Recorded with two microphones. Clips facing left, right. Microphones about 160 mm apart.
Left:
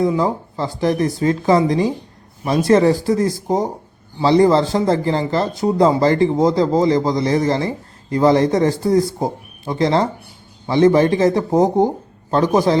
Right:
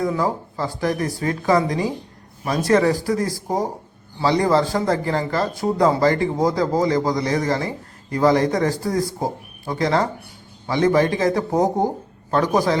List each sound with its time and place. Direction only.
0.0 s speech: 25° left (ahead or behind)